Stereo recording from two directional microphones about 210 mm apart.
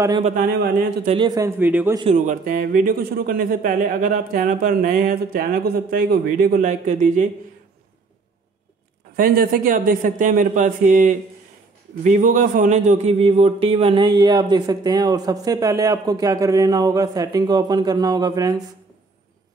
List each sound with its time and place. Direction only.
0.2 s a man's voice: 40° right (ahead or behind)
1.0 s a man's voice: 25° right (ahead or behind)
2.0 s a man's voice: 30° right (ahead or behind)
9.1 s a man's voice: 40° right (ahead or behind); by 18.6 s 20° right (ahead or behind)